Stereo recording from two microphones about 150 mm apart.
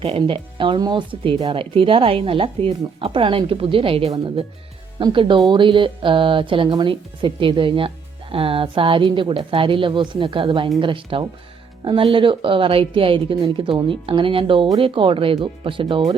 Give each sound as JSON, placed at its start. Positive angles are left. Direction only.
{"t": 0.0, "sound": "speech", "side_deg": -35}